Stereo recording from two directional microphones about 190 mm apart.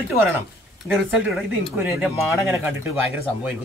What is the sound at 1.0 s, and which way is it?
Speech, 5° right (ahead or behind).